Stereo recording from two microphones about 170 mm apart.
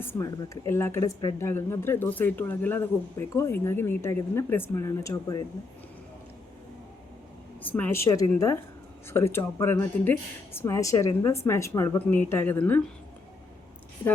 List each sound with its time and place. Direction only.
0.0 s speech: 15° left (ahead or behind)
7.6 s speech: 10° left (ahead or behind)